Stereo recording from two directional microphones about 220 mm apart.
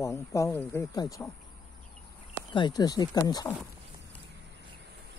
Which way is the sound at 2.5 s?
20° left (ahead or behind).